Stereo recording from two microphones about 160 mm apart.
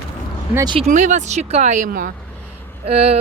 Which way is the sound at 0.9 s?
50° right (ahead or behind).